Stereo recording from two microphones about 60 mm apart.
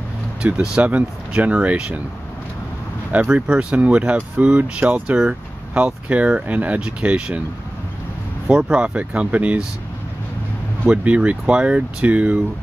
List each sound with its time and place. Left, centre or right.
0.4 s speech: centre
3.1 s speech: right
8.5 s speech: centre
10.9 s speech: right